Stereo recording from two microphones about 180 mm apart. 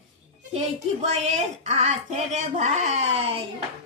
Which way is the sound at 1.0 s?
40° right (ahead or behind).